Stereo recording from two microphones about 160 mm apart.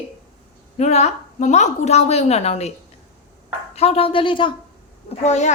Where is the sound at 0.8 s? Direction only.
45° left (ahead or behind).